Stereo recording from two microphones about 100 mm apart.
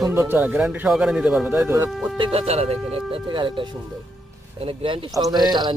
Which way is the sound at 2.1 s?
65° right (ahead or behind).